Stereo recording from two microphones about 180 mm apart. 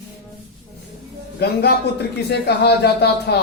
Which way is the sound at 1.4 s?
65° left (ahead or behind).